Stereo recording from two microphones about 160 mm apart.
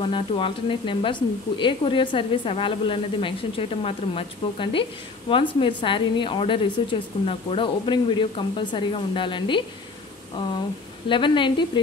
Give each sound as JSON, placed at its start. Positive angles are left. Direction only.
{"t": 0.0, "sound": "speech", "side_deg": 35}
{"t": 11.1, "sound": "speech", "side_deg": 30}